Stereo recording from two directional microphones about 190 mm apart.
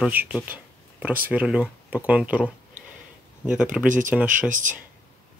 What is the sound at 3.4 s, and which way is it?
Speech, 5° right (ahead or behind).